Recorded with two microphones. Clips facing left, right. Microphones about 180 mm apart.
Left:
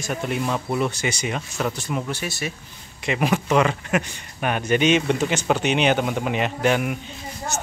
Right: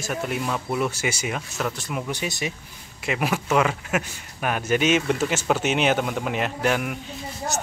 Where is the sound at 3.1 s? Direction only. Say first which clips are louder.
Left 3 dB; 5° right (ahead or behind).